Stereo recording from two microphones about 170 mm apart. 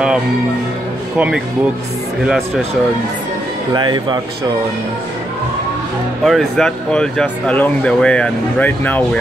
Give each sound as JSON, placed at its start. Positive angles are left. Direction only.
{"t": 1.1, "sound": "speech", "side_deg": -10}
{"t": 3.7, "sound": "speech", "side_deg": -25}
{"t": 6.2, "sound": "speech", "side_deg": 0}